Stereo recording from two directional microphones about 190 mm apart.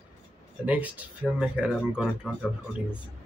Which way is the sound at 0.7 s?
10° right (ahead or behind).